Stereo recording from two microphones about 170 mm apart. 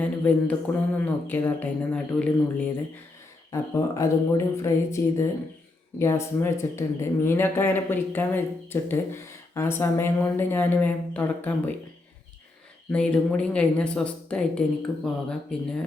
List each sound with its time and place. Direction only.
0.0 s a sound: 10° left (ahead or behind)
0.9 s speech: 10° left (ahead or behind)
3.5 s speech: 20° left (ahead or behind)
12.9 s speech: 5° left (ahead or behind)